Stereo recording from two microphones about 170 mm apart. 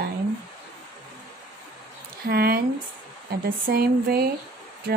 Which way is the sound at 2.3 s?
65° right (ahead or behind).